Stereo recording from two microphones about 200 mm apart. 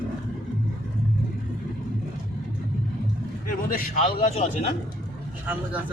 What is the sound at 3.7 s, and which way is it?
Speech, 45° left (ahead or behind).